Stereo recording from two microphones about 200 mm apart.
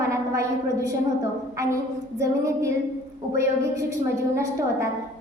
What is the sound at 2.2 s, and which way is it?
Speech, 15° right (ahead or behind).